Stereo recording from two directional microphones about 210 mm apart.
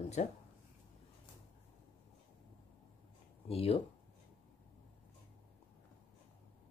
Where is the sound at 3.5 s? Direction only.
30° left (ahead or behind).